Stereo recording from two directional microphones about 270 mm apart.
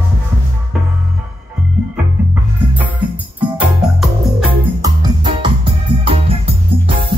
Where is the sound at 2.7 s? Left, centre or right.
Centre.